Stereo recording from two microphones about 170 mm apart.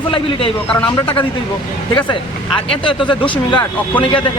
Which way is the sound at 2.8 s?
30° left (ahead or behind).